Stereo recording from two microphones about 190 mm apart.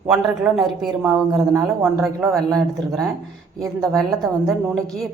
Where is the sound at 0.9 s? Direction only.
15° right (ahead or behind).